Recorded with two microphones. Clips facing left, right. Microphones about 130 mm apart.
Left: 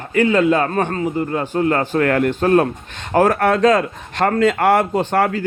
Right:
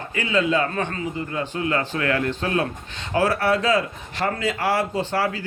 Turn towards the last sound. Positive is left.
turn(degrees=50)  # may be behind; listen again after turning